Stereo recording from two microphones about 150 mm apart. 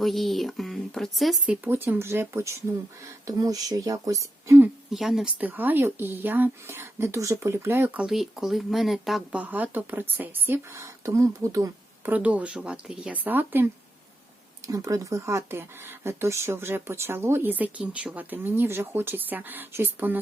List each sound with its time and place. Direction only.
0.0 s speech: centre (ahead or behind)
1.6 s speech: 15° right (ahead or behind)
4.9 s speech: centre (ahead or behind); by 12.1 s 20° right (ahead or behind)
12.1 s speech: 10° right (ahead or behind)
14.7 s speech: 20° right (ahead or behind)